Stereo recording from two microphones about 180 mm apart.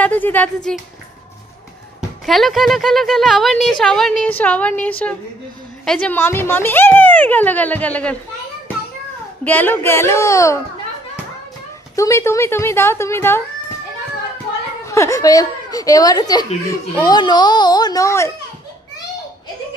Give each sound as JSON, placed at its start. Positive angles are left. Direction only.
{"t": 0.0, "sound": "speech", "side_deg": 10}
{"t": 2.0, "sound": "speech", "side_deg": 0}
{"t": 9.4, "sound": "speech", "side_deg": 10}
{"t": 11.9, "sound": "speech", "side_deg": 15}
{"t": 14.9, "sound": "speech", "side_deg": 15}